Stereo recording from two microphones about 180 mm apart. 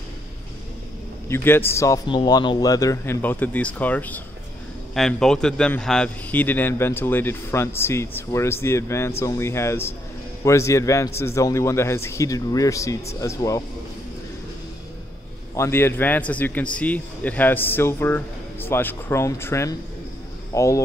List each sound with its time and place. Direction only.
1.3 s speech: 10° left (ahead or behind)
15.5 s speech: 15° left (ahead or behind)